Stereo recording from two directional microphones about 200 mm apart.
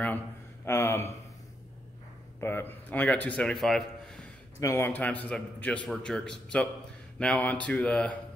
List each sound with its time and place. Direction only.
0.7 s a sound: 10° left (ahead or behind)
2.4 s a man's voice: 10° left (ahead or behind)
4.6 s a man's voice: 15° left (ahead or behind)